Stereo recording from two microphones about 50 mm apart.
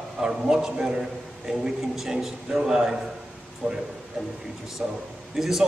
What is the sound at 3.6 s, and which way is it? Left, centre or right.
Speech, right.